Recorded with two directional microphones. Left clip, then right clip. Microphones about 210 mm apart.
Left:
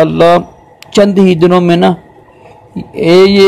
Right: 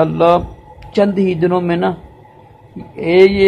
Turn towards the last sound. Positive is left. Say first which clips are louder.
# left 4 dB
turn(degrees=45)  # may be behind; listen again after turning